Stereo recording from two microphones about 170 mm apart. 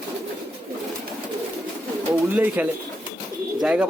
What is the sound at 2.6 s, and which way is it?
A man's voice, 10° right (ahead or behind).